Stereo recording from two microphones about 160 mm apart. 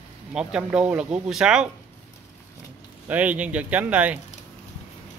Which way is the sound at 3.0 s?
10° right (ahead or behind).